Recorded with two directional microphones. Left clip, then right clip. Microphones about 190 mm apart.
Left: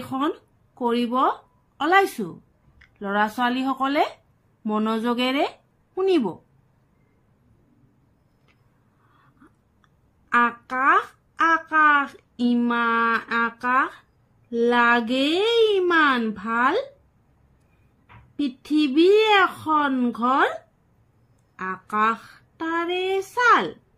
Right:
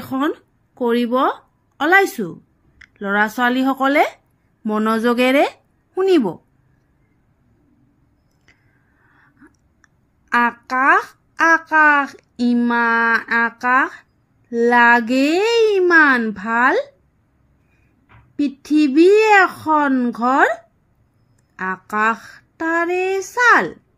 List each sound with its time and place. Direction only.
0.1 s a child's voice: 30° right (ahead or behind)
10.3 s a child's voice: 30° right (ahead or behind)
18.4 s a child's voice: 30° right (ahead or behind)
21.5 s a child's voice: 35° right (ahead or behind)